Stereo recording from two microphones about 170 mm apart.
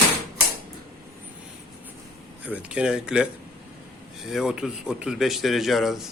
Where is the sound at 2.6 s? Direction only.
5° right (ahead or behind).